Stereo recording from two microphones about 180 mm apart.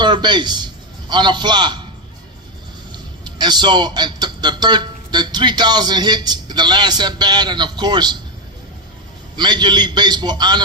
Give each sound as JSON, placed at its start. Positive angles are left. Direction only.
{"t": 0.0, "sound": "a man's voice", "side_deg": -25}
{"t": 2.9, "sound": "a man's voice", "side_deg": -25}
{"t": 9.3, "sound": "a man's voice", "side_deg": -25}